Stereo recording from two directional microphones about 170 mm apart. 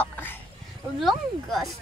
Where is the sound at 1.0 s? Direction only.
Centre (ahead or behind).